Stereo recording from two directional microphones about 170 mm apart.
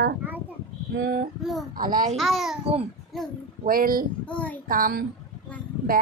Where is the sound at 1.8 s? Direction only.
55° right (ahead or behind).